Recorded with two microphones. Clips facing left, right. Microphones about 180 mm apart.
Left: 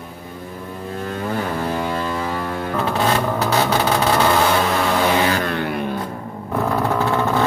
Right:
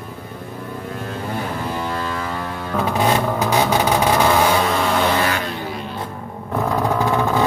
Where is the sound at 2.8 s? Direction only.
15° right (ahead or behind).